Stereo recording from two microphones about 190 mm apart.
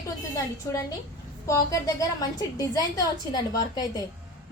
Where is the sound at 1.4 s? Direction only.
15° left (ahead or behind).